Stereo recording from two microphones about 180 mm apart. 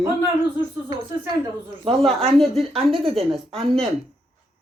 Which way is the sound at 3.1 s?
Centre (ahead or behind).